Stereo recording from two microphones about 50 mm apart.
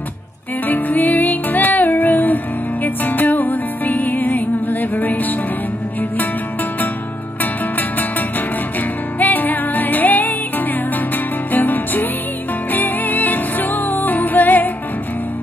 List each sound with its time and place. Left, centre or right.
0.7 s music: left
9.2 s music: left
11.5 s music: left